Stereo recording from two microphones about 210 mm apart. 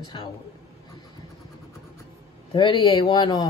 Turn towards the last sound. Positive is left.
turn(degrees=20)  # may be behind; listen again after turning